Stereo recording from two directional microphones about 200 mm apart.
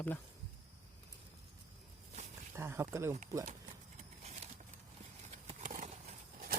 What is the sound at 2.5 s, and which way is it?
Speech, 10° right (ahead or behind).